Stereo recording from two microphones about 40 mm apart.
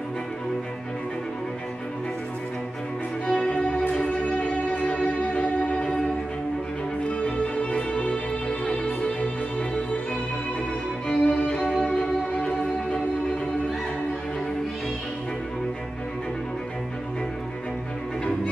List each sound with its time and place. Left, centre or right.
3.3 s music: left
7.1 s music: left
11.2 s music: left